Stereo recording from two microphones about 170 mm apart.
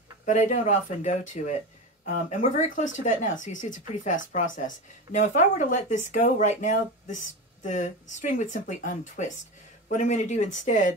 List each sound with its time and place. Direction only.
0.2 s speech: 45° left (ahead or behind)